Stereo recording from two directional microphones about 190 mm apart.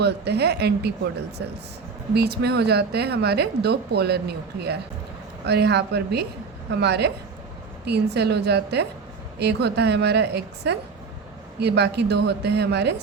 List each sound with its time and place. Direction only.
0.0 s speech: 60° right (ahead or behind)
2.1 s speech: 60° right (ahead or behind)